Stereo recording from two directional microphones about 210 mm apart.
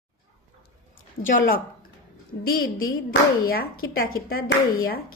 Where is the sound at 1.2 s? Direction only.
40° left (ahead or behind).